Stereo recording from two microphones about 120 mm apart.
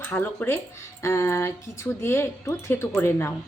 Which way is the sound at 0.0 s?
15° left (ahead or behind).